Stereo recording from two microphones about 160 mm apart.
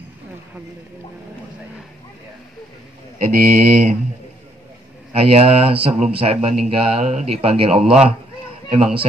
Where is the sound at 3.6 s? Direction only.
45° right (ahead or behind).